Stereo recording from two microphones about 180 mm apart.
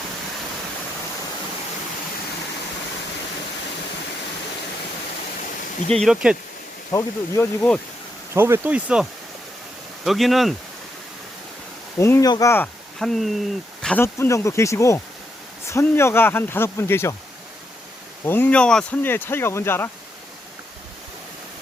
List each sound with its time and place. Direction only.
5.9 s speech: centre (ahead or behind)
6.9 s speech: 15° left (ahead or behind)
8.3 s speech: 15° right (ahead or behind)
11.9 s speech: 15° left (ahead or behind)
13.0 s speech: centre (ahead or behind)
13.8 s speech: 10° left (ahead or behind)
18.3 s speech: 10° left (ahead or behind)